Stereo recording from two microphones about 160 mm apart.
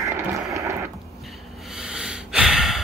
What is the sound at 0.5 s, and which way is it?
Radio, 20° right (ahead or behind).